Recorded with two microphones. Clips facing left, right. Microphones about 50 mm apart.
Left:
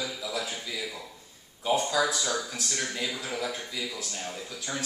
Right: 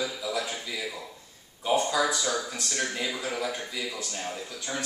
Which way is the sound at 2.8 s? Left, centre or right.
Centre.